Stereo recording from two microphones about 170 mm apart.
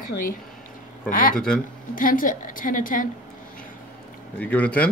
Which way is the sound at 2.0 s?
55° left (ahead or behind).